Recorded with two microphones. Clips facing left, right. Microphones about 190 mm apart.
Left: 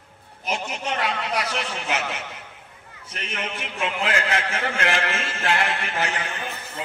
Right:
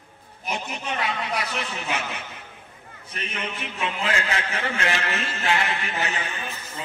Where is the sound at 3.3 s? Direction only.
70° left (ahead or behind).